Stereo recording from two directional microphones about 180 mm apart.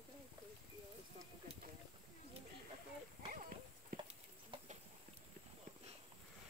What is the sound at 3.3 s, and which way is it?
Clip-clop, 50° right (ahead or behind).